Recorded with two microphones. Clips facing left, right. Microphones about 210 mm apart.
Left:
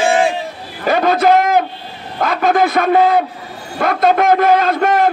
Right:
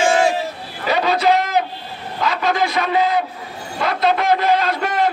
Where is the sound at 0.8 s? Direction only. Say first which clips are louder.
Left 4 dB; 50° left (ahead or behind).